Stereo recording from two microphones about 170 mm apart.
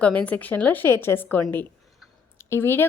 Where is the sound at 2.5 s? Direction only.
15° left (ahead or behind).